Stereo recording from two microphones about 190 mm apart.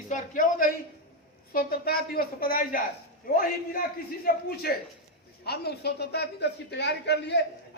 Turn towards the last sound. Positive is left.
turn(degrees=65)  # may be behind; listen again after turning